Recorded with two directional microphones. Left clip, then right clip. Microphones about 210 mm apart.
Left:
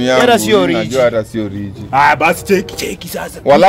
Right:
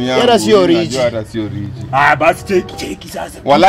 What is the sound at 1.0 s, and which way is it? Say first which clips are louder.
Speech: left 3 dB; 35° left (ahead or behind).